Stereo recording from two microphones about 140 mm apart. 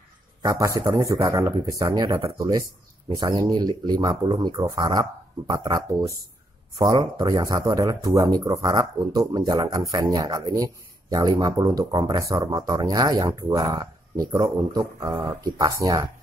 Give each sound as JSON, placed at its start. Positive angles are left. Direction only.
{"t": 0.4, "sound": "a man's voice", "side_deg": -25}